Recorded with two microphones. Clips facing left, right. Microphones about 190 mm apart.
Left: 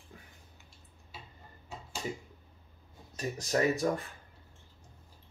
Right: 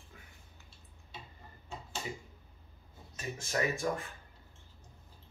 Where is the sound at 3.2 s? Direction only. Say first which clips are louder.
Left 5 dB; 40° left (ahead or behind).